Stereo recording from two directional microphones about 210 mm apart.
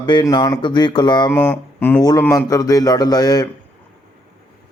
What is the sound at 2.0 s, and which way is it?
Mantra, 20° left (ahead or behind).